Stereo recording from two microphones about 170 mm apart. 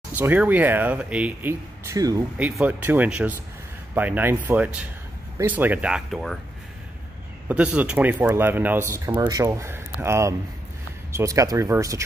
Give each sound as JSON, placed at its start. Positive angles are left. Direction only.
{"t": 0.1, "sound": "speech", "side_deg": -10}
{"t": 2.3, "sound": "speech", "side_deg": -10}
{"t": 7.4, "sound": "speech", "side_deg": -10}